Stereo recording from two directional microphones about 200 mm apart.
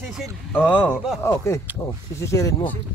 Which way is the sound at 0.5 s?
10° left (ahead or behind).